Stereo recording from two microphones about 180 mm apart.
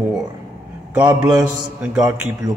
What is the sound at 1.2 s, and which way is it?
A man's voice, 5° right (ahead or behind).